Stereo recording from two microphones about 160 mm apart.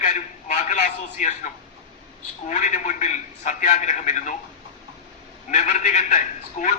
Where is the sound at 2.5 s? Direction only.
50° left (ahead or behind).